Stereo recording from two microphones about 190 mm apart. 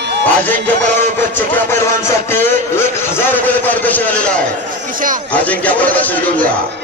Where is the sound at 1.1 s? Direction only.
10° left (ahead or behind).